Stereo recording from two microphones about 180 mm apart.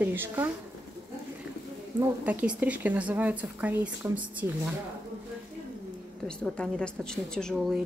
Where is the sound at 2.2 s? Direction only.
10° right (ahead or behind).